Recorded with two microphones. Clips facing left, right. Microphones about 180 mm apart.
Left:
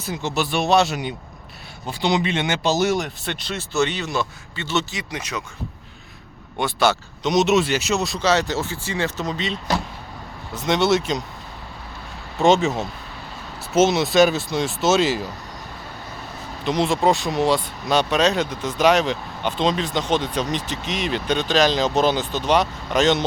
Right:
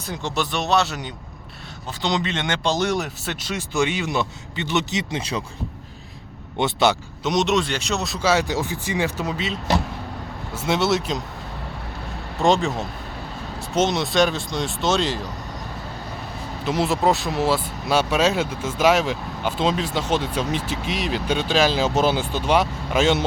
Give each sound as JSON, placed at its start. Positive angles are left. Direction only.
{"t": 0.0, "sound": "speech", "side_deg": 5}
{"t": 6.6, "sound": "speech", "side_deg": -20}
{"t": 7.3, "sound": "speech", "side_deg": 5}
{"t": 12.4, "sound": "speech", "side_deg": 0}
{"t": 16.6, "sound": "speech", "side_deg": -5}